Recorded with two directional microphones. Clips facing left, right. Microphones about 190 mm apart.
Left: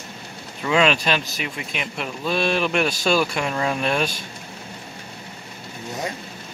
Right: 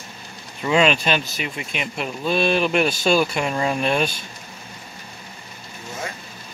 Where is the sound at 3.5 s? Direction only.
15° right (ahead or behind).